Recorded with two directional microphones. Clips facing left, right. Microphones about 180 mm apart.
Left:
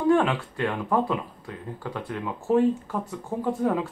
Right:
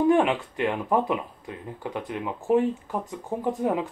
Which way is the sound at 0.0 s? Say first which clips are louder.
Right 1 dB; 20° right (ahead or behind).